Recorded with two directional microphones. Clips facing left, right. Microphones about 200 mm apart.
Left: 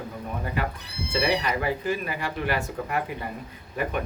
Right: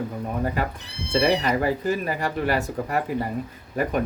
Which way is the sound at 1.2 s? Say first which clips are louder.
Right 4 dB; 45° right (ahead or behind).